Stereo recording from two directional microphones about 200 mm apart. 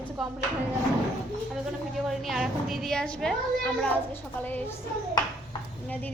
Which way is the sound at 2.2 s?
Centre (ahead or behind).